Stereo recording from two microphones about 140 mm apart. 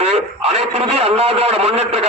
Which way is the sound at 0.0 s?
50° right (ahead or behind).